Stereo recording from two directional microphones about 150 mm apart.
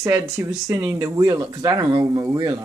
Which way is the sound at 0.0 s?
20° right (ahead or behind).